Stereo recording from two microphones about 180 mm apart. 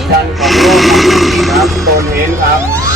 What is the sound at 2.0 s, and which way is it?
Speech, 15° right (ahead or behind).